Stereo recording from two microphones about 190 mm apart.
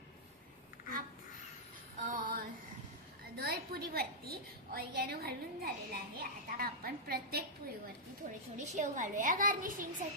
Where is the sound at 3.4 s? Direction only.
55° right (ahead or behind).